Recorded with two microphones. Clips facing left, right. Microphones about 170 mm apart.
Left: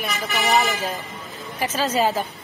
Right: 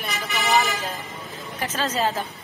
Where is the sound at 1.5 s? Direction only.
10° left (ahead or behind).